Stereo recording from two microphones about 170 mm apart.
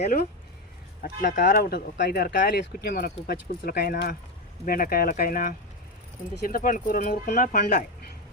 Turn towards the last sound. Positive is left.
turn(degrees=55)  # may be behind; listen again after turning